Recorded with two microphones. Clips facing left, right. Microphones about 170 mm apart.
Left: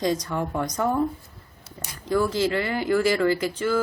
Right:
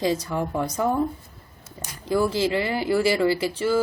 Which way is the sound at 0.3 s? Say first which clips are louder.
Right 1 dB; 5° right (ahead or behind).